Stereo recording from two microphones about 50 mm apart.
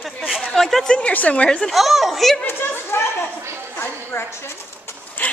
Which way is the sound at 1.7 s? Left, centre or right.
Centre.